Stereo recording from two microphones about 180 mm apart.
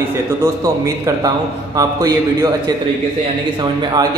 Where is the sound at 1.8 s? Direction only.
20° right (ahead or behind).